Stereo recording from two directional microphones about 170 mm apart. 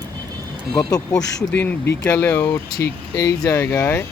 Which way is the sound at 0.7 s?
20° left (ahead or behind).